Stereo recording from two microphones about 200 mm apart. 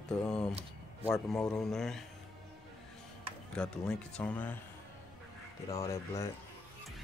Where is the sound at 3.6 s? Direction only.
5° left (ahead or behind).